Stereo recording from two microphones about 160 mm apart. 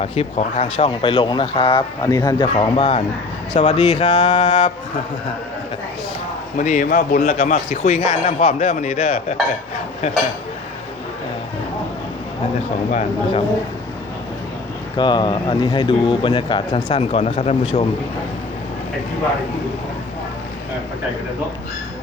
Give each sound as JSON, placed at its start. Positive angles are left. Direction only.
{"t": 0.0, "sound": "a man's voice", "side_deg": 40}
{"t": 6.6, "sound": "speech", "side_deg": 55}
{"t": 12.9, "sound": "speech", "side_deg": 45}
{"t": 14.9, "sound": "a man's voice", "side_deg": 30}